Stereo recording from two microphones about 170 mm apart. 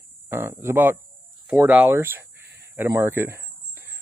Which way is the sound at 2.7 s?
10° right (ahead or behind).